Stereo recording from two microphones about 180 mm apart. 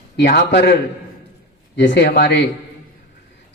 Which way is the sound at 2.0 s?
65° left (ahead or behind).